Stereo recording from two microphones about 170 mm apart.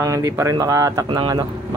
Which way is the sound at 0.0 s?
20° right (ahead or behind).